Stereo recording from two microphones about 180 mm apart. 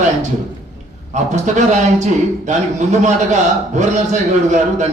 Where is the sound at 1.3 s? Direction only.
40° right (ahead or behind).